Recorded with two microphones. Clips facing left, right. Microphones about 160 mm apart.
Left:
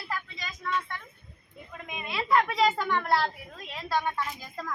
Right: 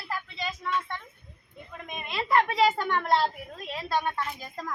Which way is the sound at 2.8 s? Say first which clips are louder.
Right 1 dB; 25° right (ahead or behind).